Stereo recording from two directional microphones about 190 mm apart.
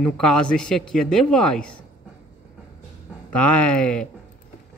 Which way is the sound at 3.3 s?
5° left (ahead or behind).